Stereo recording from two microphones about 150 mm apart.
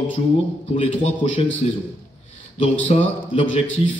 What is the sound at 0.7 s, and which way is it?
A man's voice, 40° left (ahead or behind).